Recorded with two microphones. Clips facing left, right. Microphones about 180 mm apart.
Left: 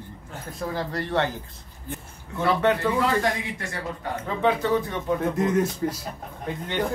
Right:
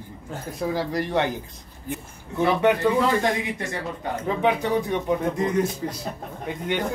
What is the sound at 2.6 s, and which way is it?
A man's voice, 20° right (ahead or behind).